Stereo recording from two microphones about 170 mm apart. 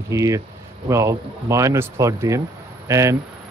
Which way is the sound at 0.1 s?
20° right (ahead or behind).